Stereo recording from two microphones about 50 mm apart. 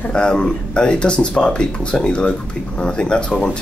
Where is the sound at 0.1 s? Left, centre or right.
Centre.